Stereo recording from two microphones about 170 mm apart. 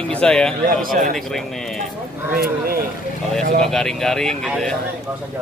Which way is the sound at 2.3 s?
60° right (ahead or behind).